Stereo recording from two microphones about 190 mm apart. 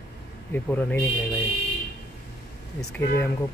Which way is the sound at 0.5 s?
10° left (ahead or behind).